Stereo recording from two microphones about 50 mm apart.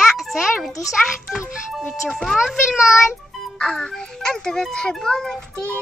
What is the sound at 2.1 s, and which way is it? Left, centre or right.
Speech, centre.